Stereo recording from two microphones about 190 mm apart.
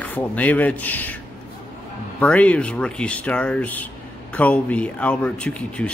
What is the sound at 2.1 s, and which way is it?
A man's voice, 5° left (ahead or behind).